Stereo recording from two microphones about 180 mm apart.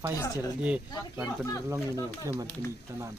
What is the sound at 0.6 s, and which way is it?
Speech, 5° right (ahead or behind).